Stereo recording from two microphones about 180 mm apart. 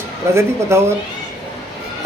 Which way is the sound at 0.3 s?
15° right (ahead or behind).